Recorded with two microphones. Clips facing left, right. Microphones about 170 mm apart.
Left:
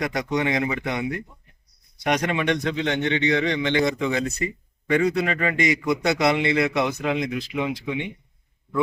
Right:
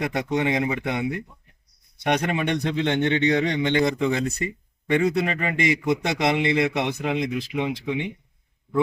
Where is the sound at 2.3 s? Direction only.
35° right (ahead or behind).